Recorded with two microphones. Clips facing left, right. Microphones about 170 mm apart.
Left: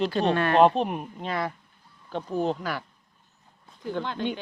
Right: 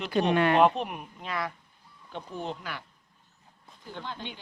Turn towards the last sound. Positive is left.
turn(degrees=70)  # may be behind; listen again after turning